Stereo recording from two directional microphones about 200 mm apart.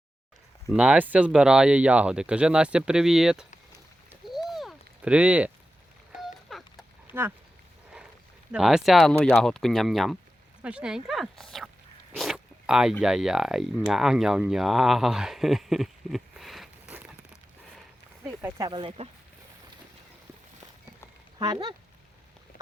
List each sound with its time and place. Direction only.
0.7 s speech: 5° right (ahead or behind)
4.1 s a sound: centre (ahead or behind)
7.1 s speech: 10° right (ahead or behind)
8.5 s speech: centre (ahead or behind)
18.4 s speech: 15° right (ahead or behind)
21.3 s speech: 25° right (ahead or behind)